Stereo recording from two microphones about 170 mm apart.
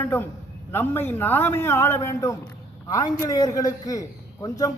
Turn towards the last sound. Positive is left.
turn(degrees=20)  # may be behind; listen again after turning